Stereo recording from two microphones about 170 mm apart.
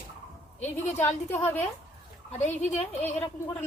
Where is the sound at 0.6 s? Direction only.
40° left (ahead or behind).